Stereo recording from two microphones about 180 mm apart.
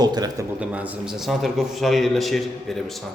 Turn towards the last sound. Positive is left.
turn(degrees=0)  # may be behind; listen again after turning